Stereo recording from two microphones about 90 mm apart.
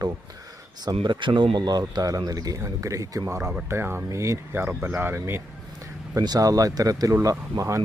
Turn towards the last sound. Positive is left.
turn(degrees=-35)  # may be behind; listen again after turning